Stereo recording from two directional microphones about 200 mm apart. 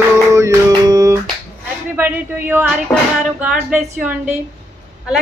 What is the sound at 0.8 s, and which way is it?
Music, 15° right (ahead or behind).